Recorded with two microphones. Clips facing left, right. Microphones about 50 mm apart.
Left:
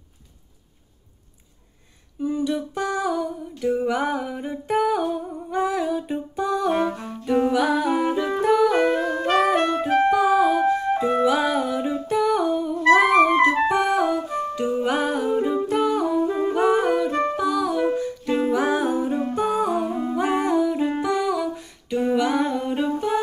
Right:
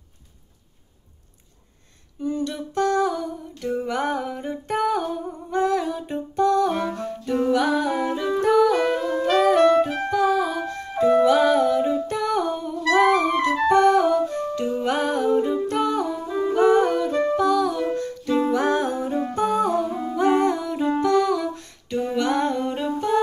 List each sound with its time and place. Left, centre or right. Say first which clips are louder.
2.1 s a sound: left 2 dB; centre
6.7 s music: left 3 dB; left
7.0 s music: left 2 dB; centre
8.7 s music: left 1 dB; left
10.1 s music: left 3 dB; centre
11.2 s humming: right 3 dB; centre
13.3 s music: left 3 dB; left
13.7 s music: right 4 dB; centre
16.3 s humming: left 1 dB; left
16.5 s music: right 3 dB; centre
19.8 s music: right 1 dB; left